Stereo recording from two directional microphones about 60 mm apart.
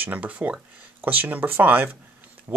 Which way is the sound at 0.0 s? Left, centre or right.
Right.